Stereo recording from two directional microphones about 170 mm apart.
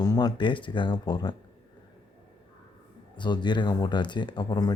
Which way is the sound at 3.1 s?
25° left (ahead or behind).